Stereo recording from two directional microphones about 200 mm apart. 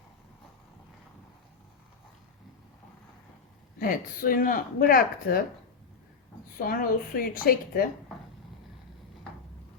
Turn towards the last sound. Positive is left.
turn(degrees=45)  # may be behind; listen again after turning